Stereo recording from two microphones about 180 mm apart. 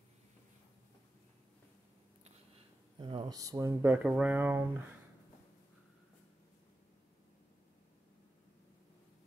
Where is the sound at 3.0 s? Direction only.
25° right (ahead or behind); by 4.6 s 10° right (ahead or behind).